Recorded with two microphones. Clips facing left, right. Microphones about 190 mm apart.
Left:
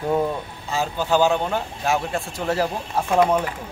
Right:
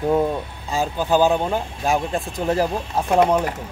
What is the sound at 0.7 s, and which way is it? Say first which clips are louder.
Speech: right 2 dB; 15° right (ahead or behind).